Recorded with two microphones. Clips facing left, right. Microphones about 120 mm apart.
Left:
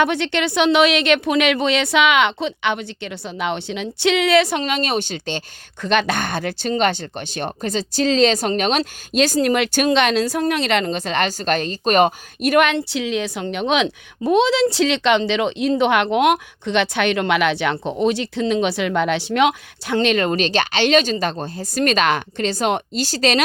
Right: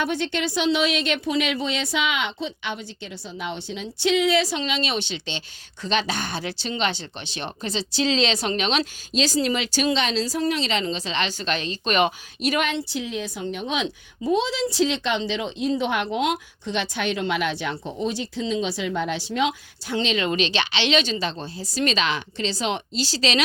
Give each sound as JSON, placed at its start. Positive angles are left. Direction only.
{"t": 0.0, "sound": "speech", "side_deg": 70}